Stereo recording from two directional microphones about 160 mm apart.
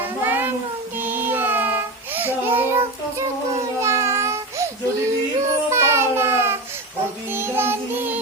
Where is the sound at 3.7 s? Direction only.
20° right (ahead or behind).